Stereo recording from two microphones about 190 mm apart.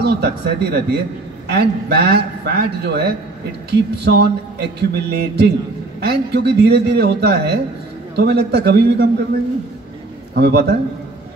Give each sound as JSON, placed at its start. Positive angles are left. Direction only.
{"t": 0.0, "sound": "a man's voice", "side_deg": -60}
{"t": 10.3, "sound": "a man's voice", "side_deg": -60}